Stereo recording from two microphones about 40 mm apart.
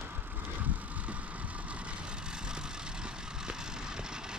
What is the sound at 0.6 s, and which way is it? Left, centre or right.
Vehicle, right.